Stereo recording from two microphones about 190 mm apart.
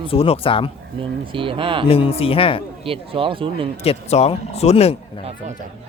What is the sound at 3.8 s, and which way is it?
Speech, 35° left (ahead or behind).